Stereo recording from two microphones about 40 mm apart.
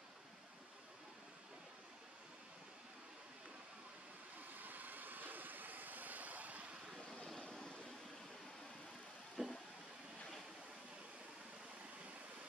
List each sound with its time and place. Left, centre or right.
4.6 s vehicle: right
7.4 s vehicle: left
9.4 s vehicle: centre